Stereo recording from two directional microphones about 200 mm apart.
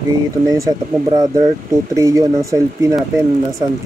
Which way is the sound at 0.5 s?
20° right (ahead or behind).